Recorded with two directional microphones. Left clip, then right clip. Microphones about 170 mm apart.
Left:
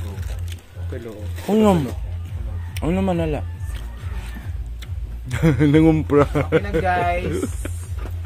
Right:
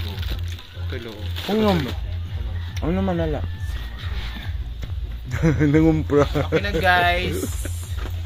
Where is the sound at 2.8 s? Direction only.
30° left (ahead or behind).